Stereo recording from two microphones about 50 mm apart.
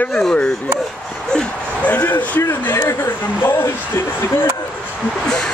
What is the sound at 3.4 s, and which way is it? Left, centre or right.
Speech, left.